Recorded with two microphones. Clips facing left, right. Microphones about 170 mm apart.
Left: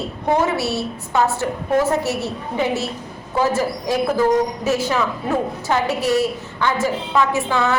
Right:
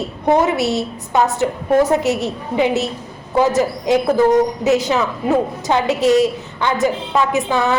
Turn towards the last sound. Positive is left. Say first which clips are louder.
# right 2 dB
turn(degrees=-20)  # may be behind; listen again after turning